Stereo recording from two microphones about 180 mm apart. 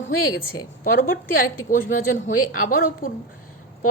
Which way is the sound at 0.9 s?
55° left (ahead or behind).